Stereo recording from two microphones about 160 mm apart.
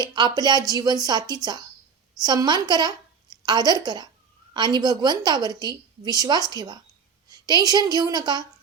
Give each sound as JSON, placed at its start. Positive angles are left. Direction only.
{"t": 0.0, "sound": "a woman's voice", "side_deg": -25}